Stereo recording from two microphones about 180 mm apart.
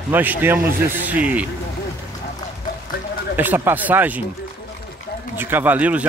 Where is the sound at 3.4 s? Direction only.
10° right (ahead or behind).